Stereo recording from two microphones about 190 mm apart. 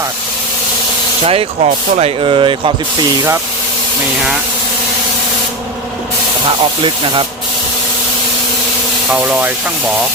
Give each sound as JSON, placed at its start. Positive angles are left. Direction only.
{"t": 1.2, "sound": "speech", "side_deg": -30}
{"t": 9.0, "sound": "speech", "side_deg": -5}